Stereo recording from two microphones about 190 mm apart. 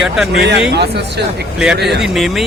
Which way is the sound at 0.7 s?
60° right (ahead or behind).